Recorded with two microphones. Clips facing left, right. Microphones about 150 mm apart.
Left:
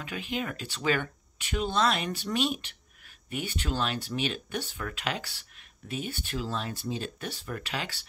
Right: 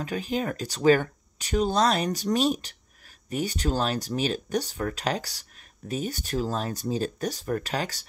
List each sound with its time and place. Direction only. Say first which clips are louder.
0.0 s speech: right 5 dB; 40° right (ahead or behind)